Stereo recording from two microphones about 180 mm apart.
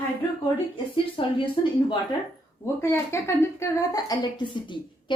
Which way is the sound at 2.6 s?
15° left (ahead or behind).